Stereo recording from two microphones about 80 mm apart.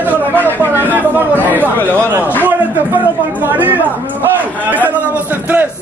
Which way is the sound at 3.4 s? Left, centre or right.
Right.